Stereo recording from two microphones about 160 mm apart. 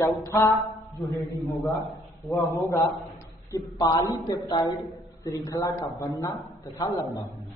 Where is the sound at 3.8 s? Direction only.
20° left (ahead or behind).